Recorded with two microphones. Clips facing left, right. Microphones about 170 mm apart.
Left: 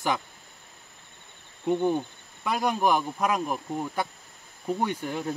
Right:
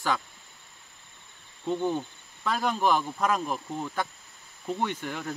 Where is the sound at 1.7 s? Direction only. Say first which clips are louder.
Left 3 dB; 15° left (ahead or behind).